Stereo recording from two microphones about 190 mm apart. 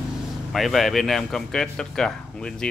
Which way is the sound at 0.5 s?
Centre (ahead or behind).